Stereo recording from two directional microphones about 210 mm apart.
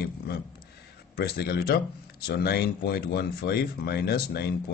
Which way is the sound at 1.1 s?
50° left (ahead or behind).